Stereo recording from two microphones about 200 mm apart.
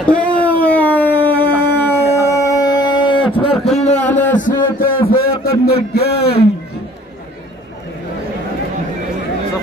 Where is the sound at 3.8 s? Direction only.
35° left (ahead or behind); by 6.4 s 55° left (ahead or behind).